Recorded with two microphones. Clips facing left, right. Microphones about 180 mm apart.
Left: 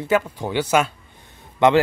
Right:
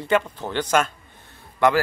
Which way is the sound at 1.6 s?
20° left (ahead or behind).